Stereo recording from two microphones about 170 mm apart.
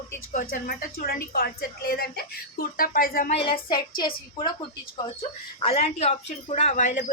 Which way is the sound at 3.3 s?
30° left (ahead or behind).